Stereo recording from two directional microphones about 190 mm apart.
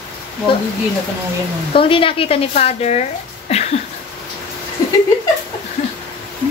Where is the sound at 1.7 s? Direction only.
30° left (ahead or behind).